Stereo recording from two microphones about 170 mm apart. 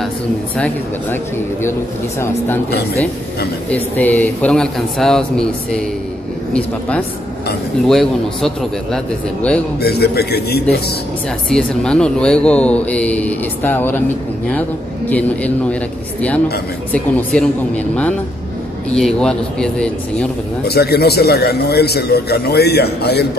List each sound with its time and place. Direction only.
1.1 s speech: 15° left (ahead or behind)
3.7 s speech: 10° left (ahead or behind)
7.8 s speech: centre (ahead or behind)
9.8 s a man's voice: 70° left (ahead or behind)
11.4 s speech: 5° left (ahead or behind)
15.0 s speech: 10° left (ahead or behind)
18.9 s speech: 5° left (ahead or behind)
20.6 s a man's voice: 70° left (ahead or behind)